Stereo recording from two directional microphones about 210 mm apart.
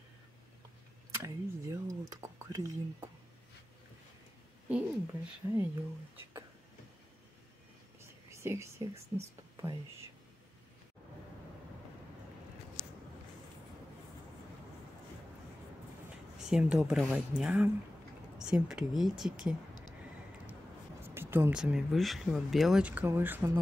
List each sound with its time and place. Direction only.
1.1 s speech: 15° right (ahead or behind)
4.6 s a sound: 5° right (ahead or behind)
5.4 s speech: 15° right (ahead or behind)
8.3 s speech: 15° right (ahead or behind)
16.3 s speech: 5° right (ahead or behind)
21.0 s speech: 10° right (ahead or behind)